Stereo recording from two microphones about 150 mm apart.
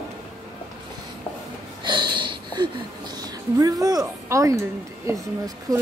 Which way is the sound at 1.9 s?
30° right (ahead or behind).